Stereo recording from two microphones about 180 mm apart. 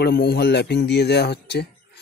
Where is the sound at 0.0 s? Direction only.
65° left (ahead or behind).